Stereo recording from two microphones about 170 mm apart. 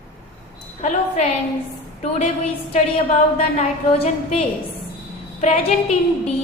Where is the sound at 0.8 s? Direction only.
45° left (ahead or behind).